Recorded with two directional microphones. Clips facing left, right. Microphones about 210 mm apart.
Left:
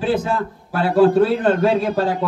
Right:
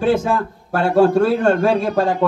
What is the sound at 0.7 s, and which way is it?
A man's voice, 50° right (ahead or behind).